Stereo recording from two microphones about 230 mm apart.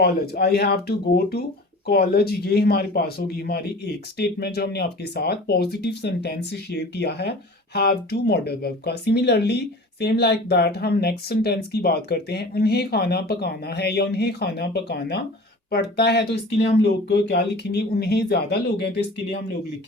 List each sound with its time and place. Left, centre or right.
0.0 s speech: left